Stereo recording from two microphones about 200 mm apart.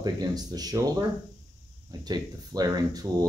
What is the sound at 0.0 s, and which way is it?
Speech, 20° right (ahead or behind).